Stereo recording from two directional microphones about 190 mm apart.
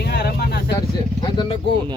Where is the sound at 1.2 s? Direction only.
25° left (ahead or behind).